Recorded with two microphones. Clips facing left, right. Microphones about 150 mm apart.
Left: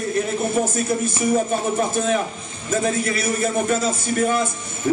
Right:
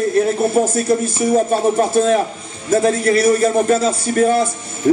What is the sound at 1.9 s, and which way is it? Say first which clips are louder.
A man's voice: right 7 dB; 35° right (ahead or behind).